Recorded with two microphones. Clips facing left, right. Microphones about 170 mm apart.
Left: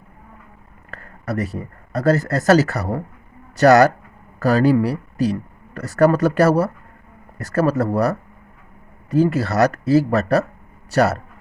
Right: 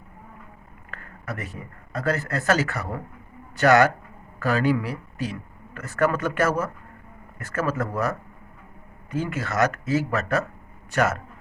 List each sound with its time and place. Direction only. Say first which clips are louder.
0.9 s a man's voice: left 8 dB; 35° left (ahead or behind)